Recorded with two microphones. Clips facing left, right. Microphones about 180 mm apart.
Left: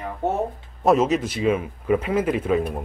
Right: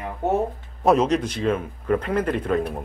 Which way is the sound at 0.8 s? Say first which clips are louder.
Even; 5° left (ahead or behind).